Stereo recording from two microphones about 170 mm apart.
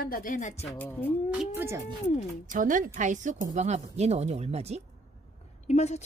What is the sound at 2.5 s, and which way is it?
A woman's voice, 50° right (ahead or behind).